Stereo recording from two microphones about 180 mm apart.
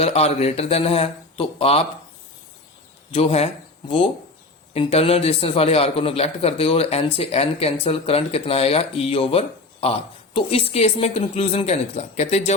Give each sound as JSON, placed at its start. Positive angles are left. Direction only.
{"t": 0.0, "sound": "speech", "side_deg": 35}
{"t": 3.1, "sound": "speech", "side_deg": 35}